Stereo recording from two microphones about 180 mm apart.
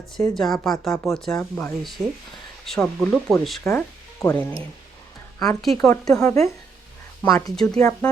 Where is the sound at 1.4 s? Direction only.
10° left (ahead or behind).